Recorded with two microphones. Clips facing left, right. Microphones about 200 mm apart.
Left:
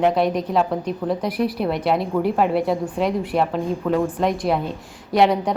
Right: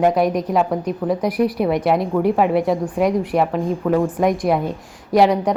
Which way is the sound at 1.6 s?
5° right (ahead or behind).